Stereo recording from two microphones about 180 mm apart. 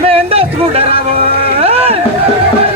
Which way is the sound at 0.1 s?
35° right (ahead or behind).